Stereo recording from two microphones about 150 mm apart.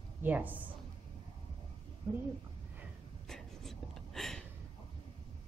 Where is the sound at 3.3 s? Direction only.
5° left (ahead or behind).